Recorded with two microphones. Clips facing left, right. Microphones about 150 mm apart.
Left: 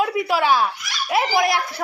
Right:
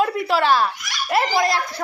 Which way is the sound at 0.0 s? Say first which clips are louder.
Right 1 dB; 5° left (ahead or behind).